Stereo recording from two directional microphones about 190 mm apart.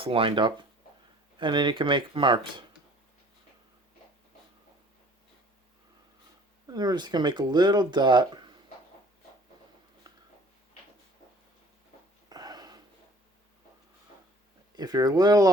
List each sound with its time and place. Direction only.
0.0 s speech: 30° right (ahead or behind)
6.7 s speech: 20° right (ahead or behind)
12.3 s a sound: 20° right (ahead or behind)
14.8 s speech: 20° right (ahead or behind)